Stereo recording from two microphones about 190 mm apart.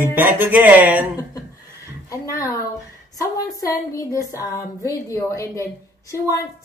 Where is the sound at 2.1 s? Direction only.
15° left (ahead or behind).